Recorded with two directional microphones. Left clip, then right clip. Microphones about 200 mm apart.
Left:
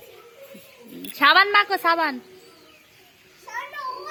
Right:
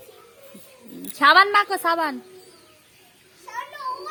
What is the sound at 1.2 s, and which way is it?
Speech, 15° right (ahead or behind).